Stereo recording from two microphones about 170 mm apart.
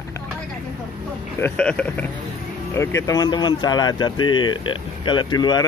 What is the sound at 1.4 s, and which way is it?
Speech, 5° left (ahead or behind).